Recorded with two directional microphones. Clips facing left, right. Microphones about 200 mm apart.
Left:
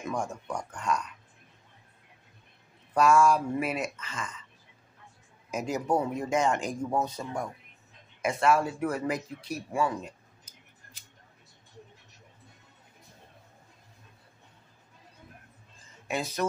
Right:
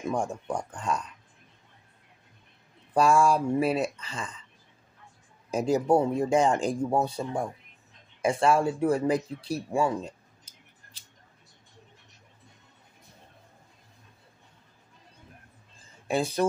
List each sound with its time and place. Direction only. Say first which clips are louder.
0.0 s speech: right 4 dB; 30° right (ahead or behind)
2.9 s speech: even; 30° right (ahead or behind)
5.5 s speech: right 5 dB; 30° right (ahead or behind)
15.9 s speech: right 5 dB; 30° right (ahead or behind)